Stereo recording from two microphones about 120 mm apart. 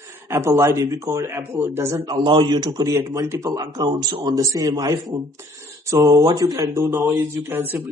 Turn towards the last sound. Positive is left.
turn(degrees=-15)  # may be behind; listen again after turning